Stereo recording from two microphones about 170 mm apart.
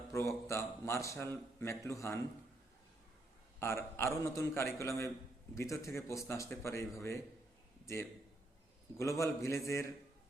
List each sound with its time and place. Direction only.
0.1 s speech: 20° left (ahead or behind)
3.6 s speech: 15° left (ahead or behind)